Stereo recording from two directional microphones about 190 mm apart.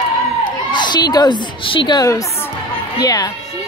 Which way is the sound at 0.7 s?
25° left (ahead or behind).